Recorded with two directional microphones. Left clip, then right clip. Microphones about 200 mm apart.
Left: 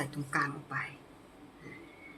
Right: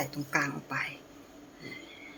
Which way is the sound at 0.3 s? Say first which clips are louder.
Right 2 dB; 30° right (ahead or behind).